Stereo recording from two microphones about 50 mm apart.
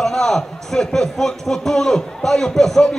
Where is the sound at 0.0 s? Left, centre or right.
Centre.